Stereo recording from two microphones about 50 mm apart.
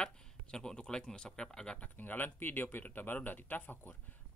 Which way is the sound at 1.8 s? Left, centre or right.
Left.